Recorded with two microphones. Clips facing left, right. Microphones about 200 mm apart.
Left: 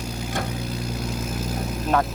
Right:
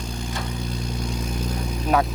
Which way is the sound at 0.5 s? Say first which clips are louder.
Left 1 dB; 5° left (ahead or behind).